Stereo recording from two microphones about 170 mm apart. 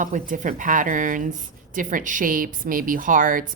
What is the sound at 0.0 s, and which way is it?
Speech, 50° right (ahead or behind).